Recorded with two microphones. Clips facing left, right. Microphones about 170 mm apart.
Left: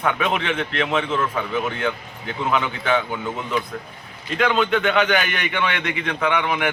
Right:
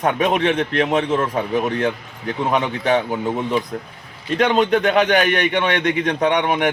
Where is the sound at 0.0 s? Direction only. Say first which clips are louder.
Right 5 dB; 40° right (ahead or behind).